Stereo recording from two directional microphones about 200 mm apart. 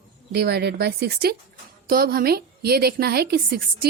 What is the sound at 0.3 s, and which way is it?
A woman's voice, 55° right (ahead or behind).